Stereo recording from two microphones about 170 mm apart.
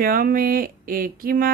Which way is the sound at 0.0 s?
60° right (ahead or behind).